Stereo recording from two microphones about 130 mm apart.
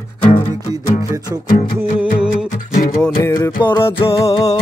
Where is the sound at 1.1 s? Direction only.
25° right (ahead or behind).